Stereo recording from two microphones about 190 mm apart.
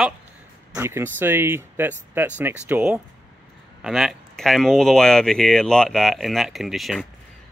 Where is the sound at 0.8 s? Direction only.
15° right (ahead or behind).